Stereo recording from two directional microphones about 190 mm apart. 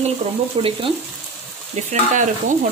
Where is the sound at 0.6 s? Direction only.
30° right (ahead or behind).